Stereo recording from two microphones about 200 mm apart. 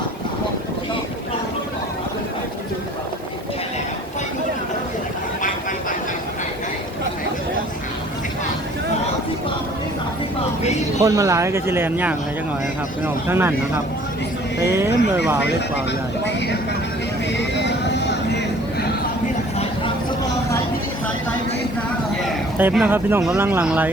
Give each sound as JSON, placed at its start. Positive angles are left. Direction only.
{"t": 11.0, "sound": "speech", "side_deg": -15}
{"t": 13.2, "sound": "speech", "side_deg": -10}
{"t": 14.6, "sound": "speech", "side_deg": -15}
{"t": 15.4, "sound": "speech", "side_deg": 60}
{"t": 17.3, "sound": "a sound", "side_deg": 60}
{"t": 22.5, "sound": "speech", "side_deg": -10}